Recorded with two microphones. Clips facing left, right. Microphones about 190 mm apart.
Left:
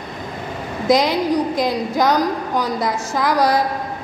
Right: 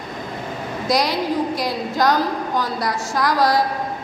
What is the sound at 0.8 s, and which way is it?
A woman's voice, 20° left (ahead or behind).